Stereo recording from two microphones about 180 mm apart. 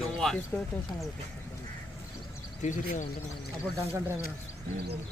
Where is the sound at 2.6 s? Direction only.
45° left (ahead or behind).